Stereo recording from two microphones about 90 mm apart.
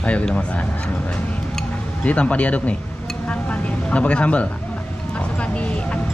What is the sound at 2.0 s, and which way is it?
A woman's voice, 15° left (ahead or behind).